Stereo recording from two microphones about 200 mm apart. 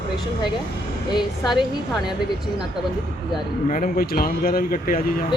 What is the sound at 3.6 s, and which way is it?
Speech, 40° left (ahead or behind).